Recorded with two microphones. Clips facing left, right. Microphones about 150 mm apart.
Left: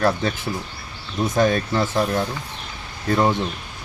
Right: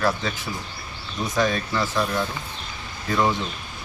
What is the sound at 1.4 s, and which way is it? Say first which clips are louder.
Speech: left 4 dB; 45° left (ahead or behind).